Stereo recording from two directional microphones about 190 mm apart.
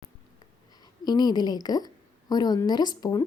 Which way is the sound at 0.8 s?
20° left (ahead or behind).